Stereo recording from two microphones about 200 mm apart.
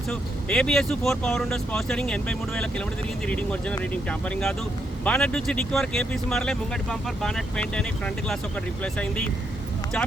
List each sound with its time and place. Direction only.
0.1 s speech: 5° left (ahead or behind)